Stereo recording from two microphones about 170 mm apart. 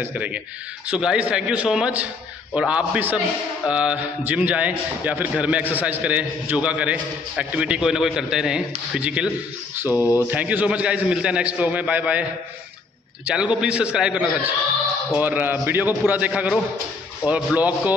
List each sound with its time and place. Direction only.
0.0 s a man's voice: 10° right (ahead or behind)
9.9 s speech: 15° left (ahead or behind)
10.3 s a man's voice: 10° right (ahead or behind)
13.3 s a man's voice: 5° right (ahead or behind)